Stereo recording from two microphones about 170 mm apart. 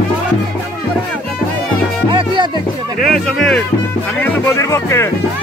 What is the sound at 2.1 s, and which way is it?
Music, 30° right (ahead or behind).